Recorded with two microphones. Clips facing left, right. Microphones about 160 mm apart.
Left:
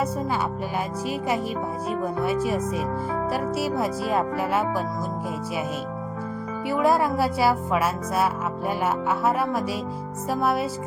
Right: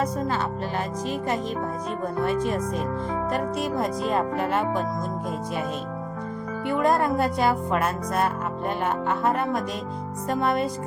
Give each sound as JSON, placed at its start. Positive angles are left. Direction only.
{"t": 2.2, "sound": "speech", "side_deg": 5}
{"t": 3.3, "sound": "music", "side_deg": 5}
{"t": 6.7, "sound": "music", "side_deg": 5}